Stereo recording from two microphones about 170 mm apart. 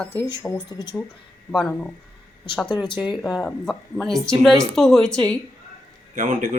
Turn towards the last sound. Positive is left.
turn(degrees=-50)  # may be behind; listen again after turning